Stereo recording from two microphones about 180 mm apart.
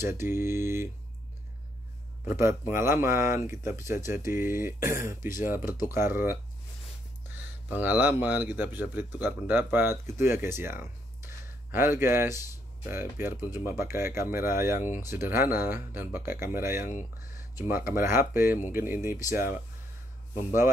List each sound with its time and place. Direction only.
0.2 s a man's voice: 15° right (ahead or behind)
2.2 s a man's voice: 15° right (ahead or behind)
4.8 s a man's voice: 50° left (ahead or behind)
5.6 s a man's voice: 10° right (ahead or behind)
7.6 s a man's voice: 10° right (ahead or behind)
20.3 s a man's voice: 45° left (ahead or behind)